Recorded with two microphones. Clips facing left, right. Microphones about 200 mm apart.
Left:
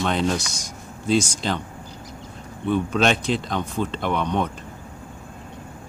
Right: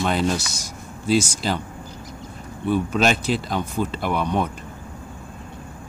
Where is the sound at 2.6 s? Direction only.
5° right (ahead or behind).